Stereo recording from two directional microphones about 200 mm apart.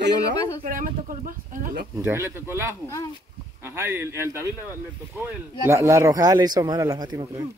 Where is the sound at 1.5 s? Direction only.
45° right (ahead or behind).